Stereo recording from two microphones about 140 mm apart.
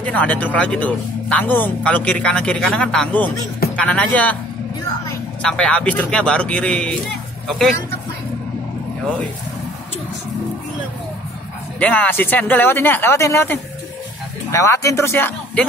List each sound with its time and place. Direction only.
0.0 s a man's voice: 10° left (ahead or behind)
5.4 s a man's voice: 5° left (ahead or behind)
11.8 s a man's voice: 10° left (ahead or behind)